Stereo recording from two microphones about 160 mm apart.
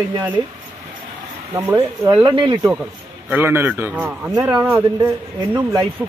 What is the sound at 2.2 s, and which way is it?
Speech, 30° right (ahead or behind).